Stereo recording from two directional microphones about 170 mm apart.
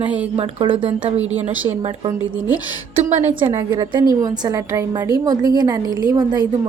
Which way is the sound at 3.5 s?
25° right (ahead or behind).